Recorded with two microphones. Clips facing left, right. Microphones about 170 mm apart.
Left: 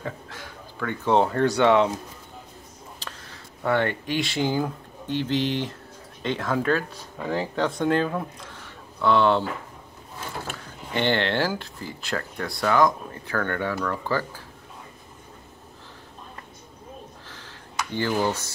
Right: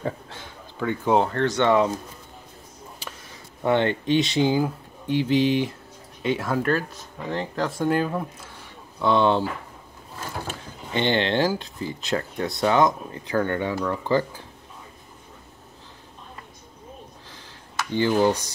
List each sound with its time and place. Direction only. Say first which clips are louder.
0.0 s a sound: right 4 dB; 25° right (ahead or behind)
1.2 s speech: left 2 dB; 10° left (ahead or behind)
3.6 s speech: right 3 dB; 20° right (ahead or behind); by 8.6 s 5° right (ahead or behind)
9.0 s speech: even; 20° right (ahead or behind)
17.9 s speech: right 5 dB; 15° right (ahead or behind)